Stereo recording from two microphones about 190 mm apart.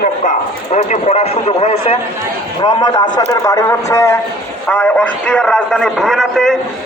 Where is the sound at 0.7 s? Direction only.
35° left (ahead or behind).